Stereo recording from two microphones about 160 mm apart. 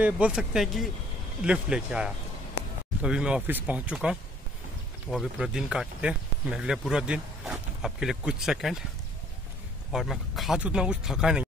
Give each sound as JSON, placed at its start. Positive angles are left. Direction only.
{"t": 0.0, "sound": "speech", "side_deg": -5}
{"t": 9.9, "sound": "speech", "side_deg": 0}